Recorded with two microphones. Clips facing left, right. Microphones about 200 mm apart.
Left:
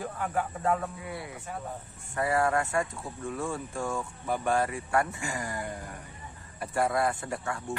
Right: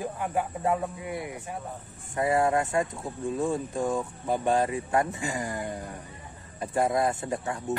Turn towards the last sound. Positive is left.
turn(degrees=-20)  # may be behind; listen again after turning